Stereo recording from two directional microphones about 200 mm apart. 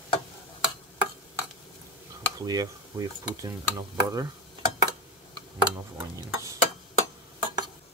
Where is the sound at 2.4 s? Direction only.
20° right (ahead or behind).